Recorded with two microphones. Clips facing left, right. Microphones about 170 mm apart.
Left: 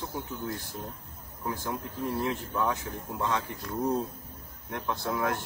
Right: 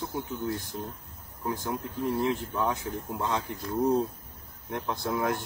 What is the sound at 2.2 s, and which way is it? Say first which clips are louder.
Speech: right 2 dB; 20° right (ahead or behind).